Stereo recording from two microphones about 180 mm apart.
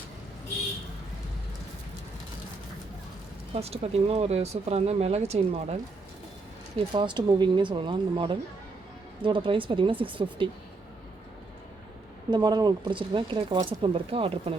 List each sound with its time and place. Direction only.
3.5 s speech: 35° right (ahead or behind)
6.9 s speech: 25° right (ahead or behind)
12.3 s speech: 20° right (ahead or behind)